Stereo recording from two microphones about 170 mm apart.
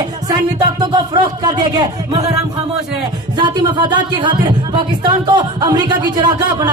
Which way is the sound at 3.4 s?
25° right (ahead or behind).